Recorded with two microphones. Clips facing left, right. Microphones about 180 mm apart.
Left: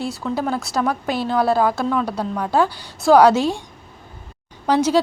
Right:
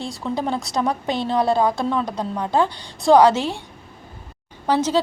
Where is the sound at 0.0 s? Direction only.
5° left (ahead or behind).